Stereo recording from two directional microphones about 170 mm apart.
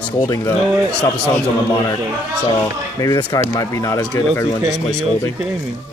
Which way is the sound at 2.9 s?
20° left (ahead or behind).